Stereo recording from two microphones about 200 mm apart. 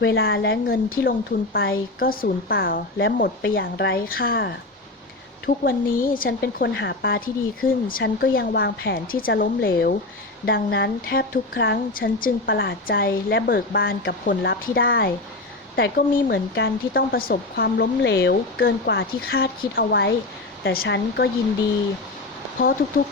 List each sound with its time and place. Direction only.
0.0 s a woman's voice: 70° left (ahead or behind); by 8.0 s 45° left (ahead or behind)
8.0 s a woman's voice: 55° left (ahead or behind)